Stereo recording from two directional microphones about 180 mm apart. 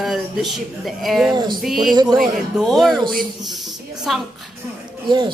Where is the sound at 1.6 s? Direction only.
Centre (ahead or behind).